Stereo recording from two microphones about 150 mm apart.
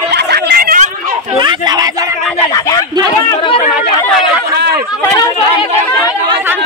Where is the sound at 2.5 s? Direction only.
20° left (ahead or behind).